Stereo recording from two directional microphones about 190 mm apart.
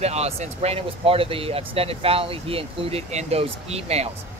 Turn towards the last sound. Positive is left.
turn(degrees=-35)  # may be behind; listen again after turning